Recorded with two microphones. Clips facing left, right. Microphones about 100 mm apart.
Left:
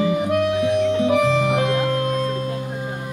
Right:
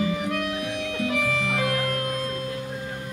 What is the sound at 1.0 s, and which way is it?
Organ, 20° left (ahead or behind).